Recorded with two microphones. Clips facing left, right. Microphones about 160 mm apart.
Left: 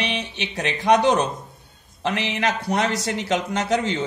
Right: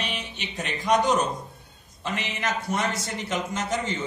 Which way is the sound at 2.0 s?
90° left.